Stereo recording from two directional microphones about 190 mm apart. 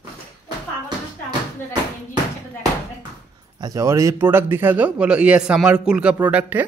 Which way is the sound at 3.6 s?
20° right (ahead or behind).